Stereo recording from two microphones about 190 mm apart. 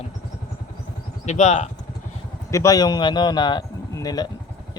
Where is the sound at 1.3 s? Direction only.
35° left (ahead or behind).